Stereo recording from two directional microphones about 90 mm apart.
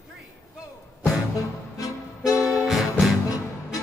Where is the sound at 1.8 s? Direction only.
35° left (ahead or behind).